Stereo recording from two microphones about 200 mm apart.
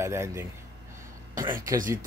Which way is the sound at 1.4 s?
40° right (ahead or behind).